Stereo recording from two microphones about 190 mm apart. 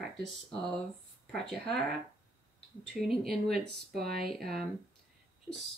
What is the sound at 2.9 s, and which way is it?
Speech, centre (ahead or behind).